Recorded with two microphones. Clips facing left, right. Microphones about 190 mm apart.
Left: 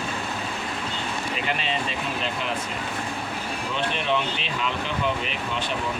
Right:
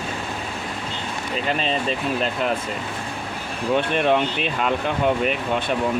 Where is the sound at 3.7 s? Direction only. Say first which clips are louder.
Right 7 dB; 50° right (ahead or behind).